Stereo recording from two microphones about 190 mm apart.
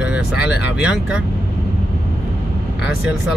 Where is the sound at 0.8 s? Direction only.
5° right (ahead or behind).